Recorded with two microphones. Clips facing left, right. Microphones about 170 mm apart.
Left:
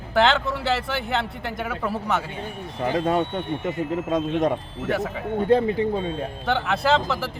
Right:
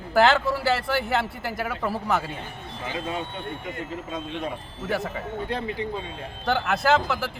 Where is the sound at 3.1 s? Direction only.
65° left (ahead or behind).